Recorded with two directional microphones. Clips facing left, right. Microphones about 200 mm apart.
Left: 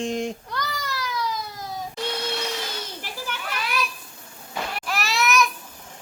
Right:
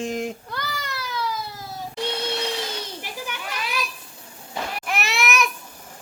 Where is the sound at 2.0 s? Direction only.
20° right (ahead or behind).